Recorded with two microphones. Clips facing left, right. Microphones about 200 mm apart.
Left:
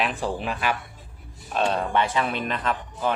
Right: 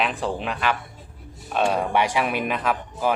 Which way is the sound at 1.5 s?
10° right (ahead or behind).